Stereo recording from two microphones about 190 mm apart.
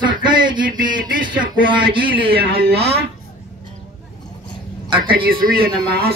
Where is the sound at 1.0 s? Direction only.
45° right (ahead or behind).